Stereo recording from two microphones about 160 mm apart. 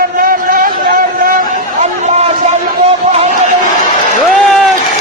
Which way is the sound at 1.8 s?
45° right (ahead or behind).